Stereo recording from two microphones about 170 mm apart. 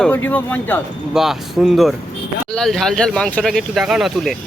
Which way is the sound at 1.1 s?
Centre (ahead or behind).